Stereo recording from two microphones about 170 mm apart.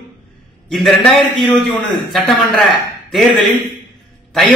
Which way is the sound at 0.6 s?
5° left (ahead or behind).